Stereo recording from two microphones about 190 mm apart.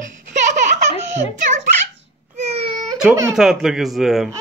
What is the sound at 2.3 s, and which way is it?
Baby cry, 35° right (ahead or behind).